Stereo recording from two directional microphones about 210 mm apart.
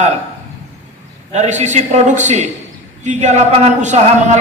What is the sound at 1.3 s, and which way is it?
A man's voice, 35° right (ahead or behind).